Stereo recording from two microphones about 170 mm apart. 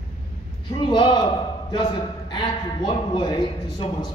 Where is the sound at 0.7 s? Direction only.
25° left (ahead or behind).